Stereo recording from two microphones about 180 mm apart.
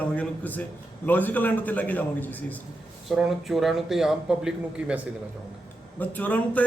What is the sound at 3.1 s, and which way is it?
A man's voice, centre (ahead or behind).